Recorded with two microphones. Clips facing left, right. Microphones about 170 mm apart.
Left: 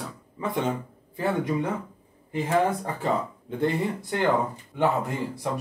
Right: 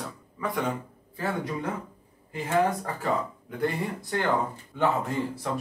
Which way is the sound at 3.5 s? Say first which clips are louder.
Left 4 dB; 20° left (ahead or behind).